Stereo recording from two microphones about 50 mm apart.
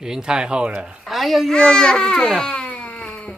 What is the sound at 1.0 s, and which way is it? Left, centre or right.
Speech, centre.